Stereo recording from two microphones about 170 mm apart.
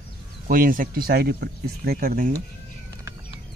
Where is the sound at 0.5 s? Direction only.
55° right (ahead or behind).